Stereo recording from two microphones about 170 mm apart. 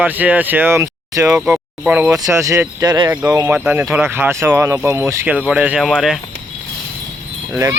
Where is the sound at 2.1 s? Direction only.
20° right (ahead or behind); by 6.1 s centre (ahead or behind).